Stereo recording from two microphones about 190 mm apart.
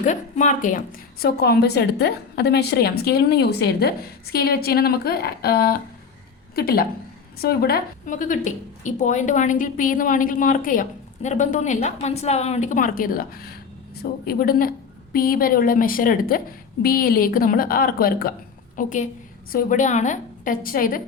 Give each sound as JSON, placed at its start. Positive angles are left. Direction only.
{"t": 0.0, "sound": "a woman's voice", "side_deg": 40}